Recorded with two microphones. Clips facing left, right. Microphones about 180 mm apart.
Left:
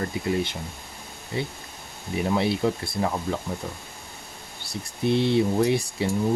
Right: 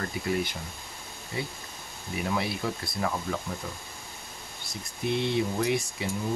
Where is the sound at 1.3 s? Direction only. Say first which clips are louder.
Left 5 dB; 25° left (ahead or behind).